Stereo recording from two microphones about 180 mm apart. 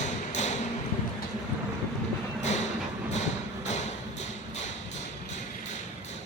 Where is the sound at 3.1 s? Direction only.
40° left (ahead or behind).